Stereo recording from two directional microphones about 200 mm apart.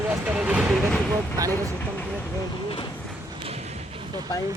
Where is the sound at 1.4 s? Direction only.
15° right (ahead or behind).